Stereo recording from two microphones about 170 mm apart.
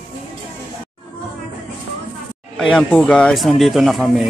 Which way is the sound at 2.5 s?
5° left (ahead or behind).